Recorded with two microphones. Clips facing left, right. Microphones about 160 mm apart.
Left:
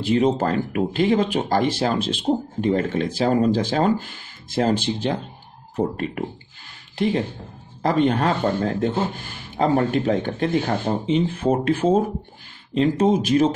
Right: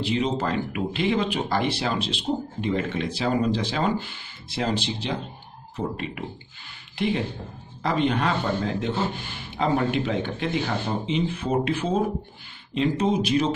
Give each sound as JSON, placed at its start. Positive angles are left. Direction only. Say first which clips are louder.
{"t": 0.0, "sound": "speech", "louder": "left 6 dB", "side_deg": 50}